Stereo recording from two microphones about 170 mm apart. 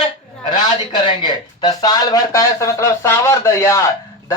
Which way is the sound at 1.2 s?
25° left (ahead or behind).